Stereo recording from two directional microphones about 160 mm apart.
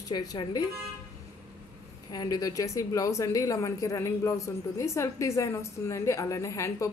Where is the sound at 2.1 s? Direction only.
25° left (ahead or behind).